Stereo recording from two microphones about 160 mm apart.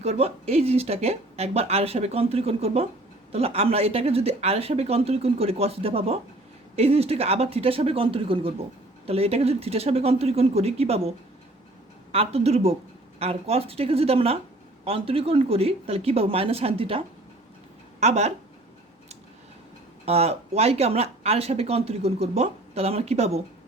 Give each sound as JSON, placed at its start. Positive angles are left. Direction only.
{"t": 0.0, "sound": "speech", "side_deg": -40}
{"t": 12.1, "sound": "speech", "side_deg": -40}
{"t": 18.0, "sound": "speech", "side_deg": -45}
{"t": 20.1, "sound": "speech", "side_deg": -40}